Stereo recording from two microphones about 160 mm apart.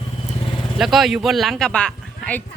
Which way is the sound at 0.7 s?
Centre (ahead or behind).